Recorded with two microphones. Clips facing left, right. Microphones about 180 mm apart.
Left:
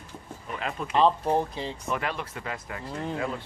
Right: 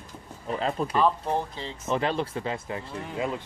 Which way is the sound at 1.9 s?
30° right (ahead or behind).